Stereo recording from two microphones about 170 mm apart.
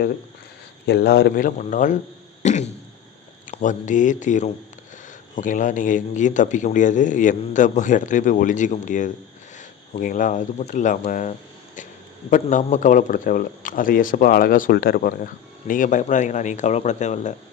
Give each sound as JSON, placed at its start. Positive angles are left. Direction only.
{"t": 0.9, "sound": "speech", "side_deg": 70}
{"t": 2.4, "sound": "a sound", "side_deg": 45}
{"t": 3.5, "sound": "speech", "side_deg": 45}